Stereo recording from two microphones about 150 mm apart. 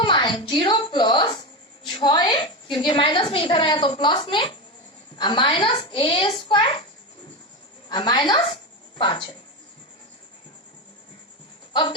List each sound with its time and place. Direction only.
0.0 s a woman's voice: 35° left (ahead or behind)
7.9 s a woman's voice: 30° left (ahead or behind)
11.7 s speech: 30° left (ahead or behind)